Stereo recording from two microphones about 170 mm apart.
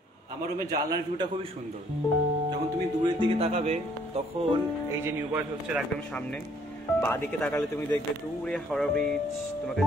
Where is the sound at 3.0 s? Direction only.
30° right (ahead or behind).